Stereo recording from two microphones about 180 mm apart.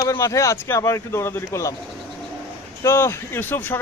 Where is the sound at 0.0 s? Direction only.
15° left (ahead or behind).